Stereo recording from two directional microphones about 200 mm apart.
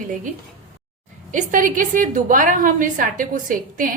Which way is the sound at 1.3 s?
40° right (ahead or behind).